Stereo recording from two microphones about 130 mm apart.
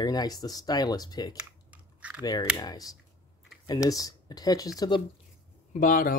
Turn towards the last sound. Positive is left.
turn(degrees=90)